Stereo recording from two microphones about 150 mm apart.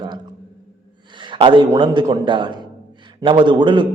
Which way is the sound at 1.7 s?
30° right (ahead or behind).